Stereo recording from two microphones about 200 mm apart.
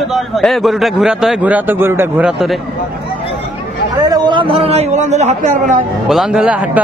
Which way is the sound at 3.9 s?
20° right (ahead or behind).